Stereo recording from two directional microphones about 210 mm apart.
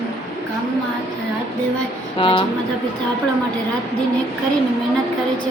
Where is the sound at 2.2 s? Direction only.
25° left (ahead or behind).